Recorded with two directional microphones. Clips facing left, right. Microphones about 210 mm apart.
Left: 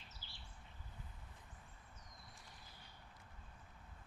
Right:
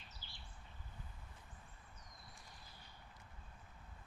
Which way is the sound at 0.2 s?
15° right (ahead or behind).